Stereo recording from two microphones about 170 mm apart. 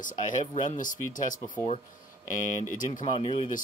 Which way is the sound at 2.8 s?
50° left (ahead or behind).